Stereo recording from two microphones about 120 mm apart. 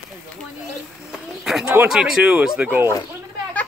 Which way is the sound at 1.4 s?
5° right (ahead or behind).